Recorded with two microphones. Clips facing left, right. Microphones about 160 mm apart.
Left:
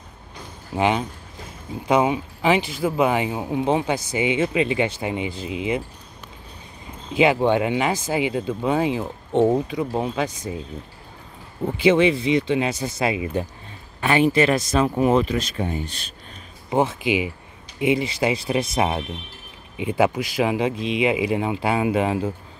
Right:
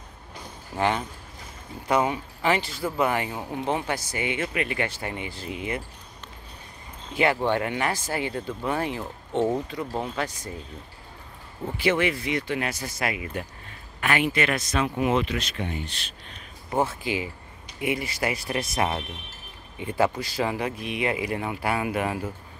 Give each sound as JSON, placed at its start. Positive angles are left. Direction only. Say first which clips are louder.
{"t": 0.7, "sound": "speech", "louder": "left 4 dB", "side_deg": 15}
{"t": 7.2, "sound": "speech", "louder": "left 5 dB", "side_deg": 15}
{"t": 11.6, "sound": "speech", "louder": "left 7 dB", "side_deg": 20}
{"t": 16.7, "sound": "speech", "louder": "left 5 dB", "side_deg": 20}